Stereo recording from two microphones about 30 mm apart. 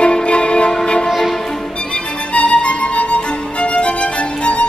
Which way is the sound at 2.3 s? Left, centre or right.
Left.